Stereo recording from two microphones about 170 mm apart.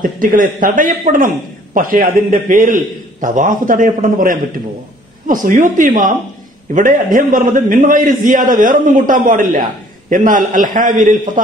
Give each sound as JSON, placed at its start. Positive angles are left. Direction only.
{"t": 0.0, "sound": "speech", "side_deg": -55}